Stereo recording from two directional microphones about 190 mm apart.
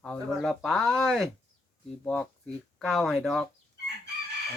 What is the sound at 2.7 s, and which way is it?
Speech, centre (ahead or behind).